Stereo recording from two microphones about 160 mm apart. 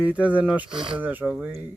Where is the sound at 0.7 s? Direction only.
30° right (ahead or behind).